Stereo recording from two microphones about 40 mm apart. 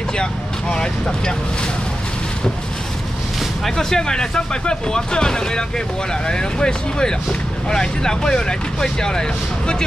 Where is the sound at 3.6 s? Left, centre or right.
Centre.